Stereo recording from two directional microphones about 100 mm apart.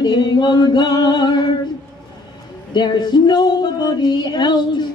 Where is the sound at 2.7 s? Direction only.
50° left (ahead or behind).